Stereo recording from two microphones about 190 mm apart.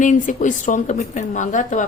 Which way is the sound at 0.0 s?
40° left (ahead or behind).